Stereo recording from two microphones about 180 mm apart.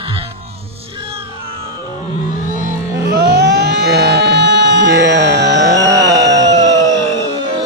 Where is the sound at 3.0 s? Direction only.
65° right (ahead or behind).